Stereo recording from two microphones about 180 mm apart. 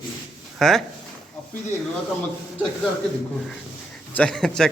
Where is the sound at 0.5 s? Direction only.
Centre (ahead or behind).